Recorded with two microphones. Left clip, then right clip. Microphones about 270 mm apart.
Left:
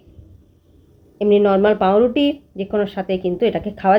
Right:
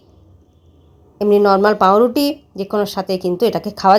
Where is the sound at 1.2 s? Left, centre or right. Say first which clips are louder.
Right 2 dB; centre.